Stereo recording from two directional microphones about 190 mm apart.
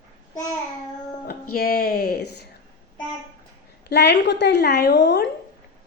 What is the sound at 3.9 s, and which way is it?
A woman's voice, 60° left (ahead or behind).